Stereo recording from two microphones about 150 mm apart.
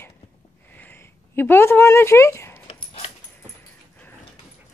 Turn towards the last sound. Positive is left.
turn(degrees=40)  # may be behind; listen again after turning